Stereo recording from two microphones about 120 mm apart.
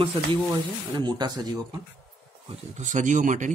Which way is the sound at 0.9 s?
35° right (ahead or behind).